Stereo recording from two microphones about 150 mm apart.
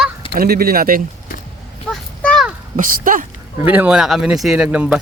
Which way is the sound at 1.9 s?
Centre (ahead or behind).